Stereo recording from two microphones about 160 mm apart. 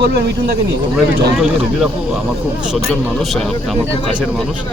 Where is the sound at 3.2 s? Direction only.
Centre (ahead or behind).